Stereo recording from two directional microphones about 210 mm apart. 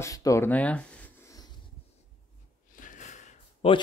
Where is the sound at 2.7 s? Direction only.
40° left (ahead or behind).